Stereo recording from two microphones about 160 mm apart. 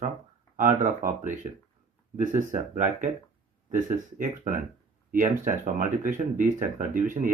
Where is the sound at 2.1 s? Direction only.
50° right (ahead or behind).